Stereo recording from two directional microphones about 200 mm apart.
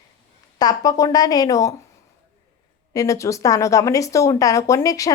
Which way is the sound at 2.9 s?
15° left (ahead or behind).